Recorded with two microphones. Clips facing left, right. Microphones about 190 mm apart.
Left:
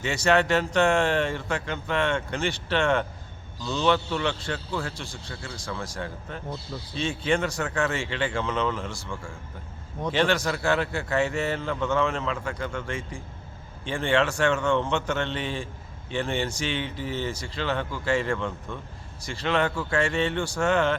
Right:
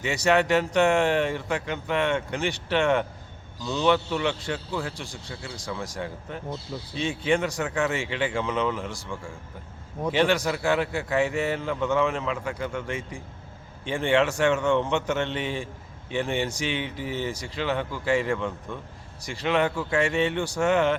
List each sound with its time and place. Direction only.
0.0 s speech: 15° right (ahead or behind)